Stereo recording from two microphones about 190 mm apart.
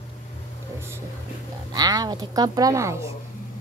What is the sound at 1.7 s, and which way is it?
A woman's voice, 20° right (ahead or behind).